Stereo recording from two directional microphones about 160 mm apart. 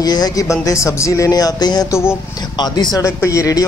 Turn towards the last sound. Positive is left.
turn(degrees=20)  # may be behind; listen again after turning